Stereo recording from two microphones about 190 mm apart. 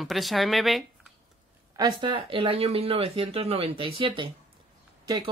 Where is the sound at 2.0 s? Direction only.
25° right (ahead or behind).